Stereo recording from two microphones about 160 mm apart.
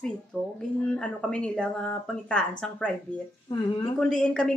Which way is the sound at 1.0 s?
5° left (ahead or behind).